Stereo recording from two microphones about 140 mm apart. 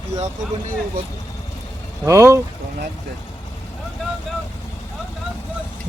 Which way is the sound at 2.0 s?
20° right (ahead or behind).